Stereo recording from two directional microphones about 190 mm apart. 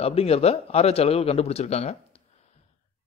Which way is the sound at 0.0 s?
30° left (ahead or behind).